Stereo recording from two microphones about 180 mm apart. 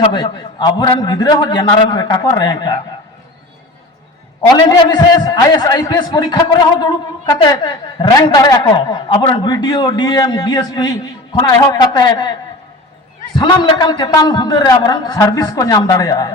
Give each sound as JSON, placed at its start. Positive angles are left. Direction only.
{"t": 0.0, "sound": "a man's voice", "side_deg": 25}
{"t": 4.5, "sound": "a man's voice", "side_deg": 20}